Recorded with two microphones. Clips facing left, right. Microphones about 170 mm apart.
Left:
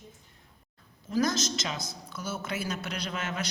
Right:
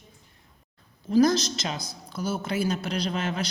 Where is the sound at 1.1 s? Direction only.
35° right (ahead or behind).